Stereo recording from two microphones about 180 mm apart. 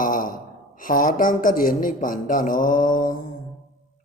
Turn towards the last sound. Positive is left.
turn(degrees=50)  # may be behind; listen again after turning